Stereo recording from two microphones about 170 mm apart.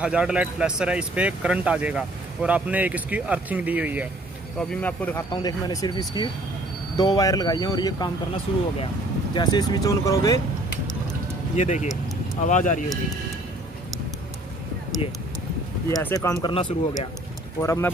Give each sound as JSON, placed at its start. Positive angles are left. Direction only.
{"t": 0.0, "sound": "speech", "side_deg": -5}
{"t": 4.6, "sound": "speech", "side_deg": 5}
{"t": 5.3, "sound": "speech", "side_deg": 20}
{"t": 11.5, "sound": "speech", "side_deg": 45}
{"t": 15.9, "sound": "speech", "side_deg": 15}
{"t": 16.4, "sound": "speech", "side_deg": 35}
{"t": 17.6, "sound": "speech", "side_deg": 15}